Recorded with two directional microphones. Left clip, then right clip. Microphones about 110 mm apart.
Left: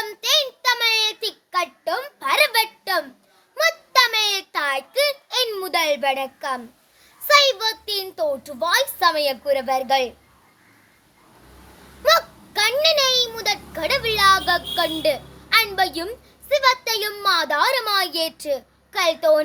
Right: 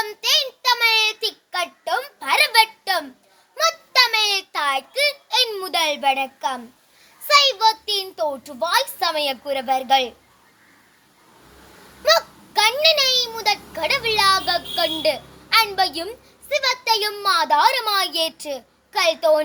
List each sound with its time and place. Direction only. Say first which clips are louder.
0.0 s child singing: even; 45° left (ahead or behind)
7.3 s a child's voice: right 1 dB; 45° left (ahead or behind)
12.0 s a child's voice: even; 40° left (ahead or behind)